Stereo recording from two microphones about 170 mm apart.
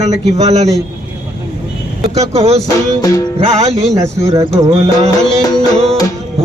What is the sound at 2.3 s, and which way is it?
Speech, 40° right (ahead or behind).